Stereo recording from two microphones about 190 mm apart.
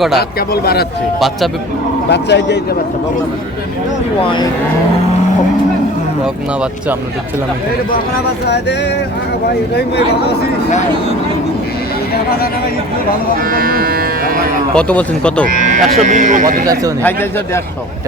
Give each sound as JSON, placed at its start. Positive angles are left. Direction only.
{"t": 0.2, "sound": "a man's voice", "side_deg": 55}
{"t": 2.0, "sound": "speech", "side_deg": 65}
{"t": 6.2, "sound": "speech", "side_deg": -5}
{"t": 8.4, "sound": "speech", "side_deg": 65}
{"t": 13.4, "sound": "cattle", "side_deg": -50}
{"t": 14.8, "sound": "speech", "side_deg": 5}
{"t": 15.4, "sound": "speech", "side_deg": -40}
{"t": 17.0, "sound": "speech", "side_deg": 10}